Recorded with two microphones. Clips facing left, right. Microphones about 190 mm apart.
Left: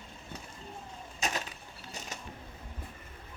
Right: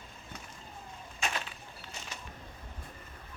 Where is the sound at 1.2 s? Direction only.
40° left (ahead or behind).